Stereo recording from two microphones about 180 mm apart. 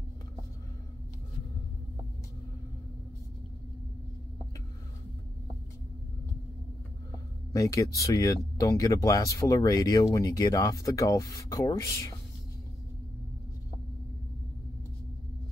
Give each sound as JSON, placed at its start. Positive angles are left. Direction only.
{"t": 7.5, "sound": "speech", "side_deg": 15}